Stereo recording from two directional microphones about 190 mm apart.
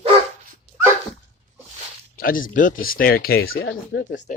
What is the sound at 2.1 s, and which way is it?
Speech, 50° left (ahead or behind).